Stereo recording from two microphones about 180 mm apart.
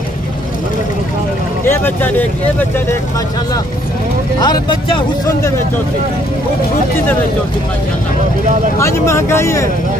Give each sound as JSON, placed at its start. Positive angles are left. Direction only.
{"t": 1.7, "sound": "speech", "side_deg": 10}
{"t": 4.4, "sound": "speech", "side_deg": 25}
{"t": 8.7, "sound": "speech", "side_deg": 15}